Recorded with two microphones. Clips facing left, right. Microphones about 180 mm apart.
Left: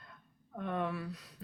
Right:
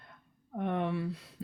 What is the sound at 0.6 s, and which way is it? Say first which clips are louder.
Speech: right 4 dB; 25° right (ahead or behind).